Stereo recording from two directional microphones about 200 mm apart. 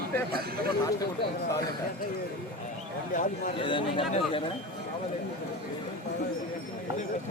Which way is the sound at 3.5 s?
25° left (ahead or behind).